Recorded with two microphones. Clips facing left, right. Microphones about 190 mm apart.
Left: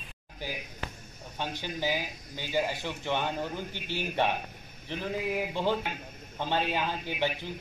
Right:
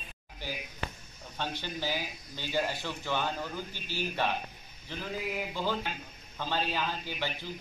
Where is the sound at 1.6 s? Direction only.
15° left (ahead or behind).